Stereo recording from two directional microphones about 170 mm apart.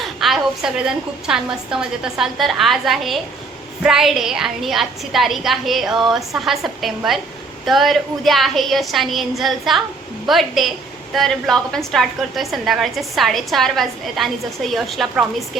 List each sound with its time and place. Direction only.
0.0 s a woman's voice: centre (ahead or behind)